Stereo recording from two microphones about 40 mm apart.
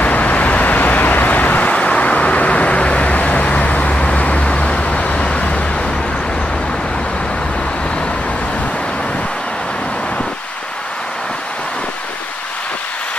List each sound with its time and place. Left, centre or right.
0.0 s vehicle: left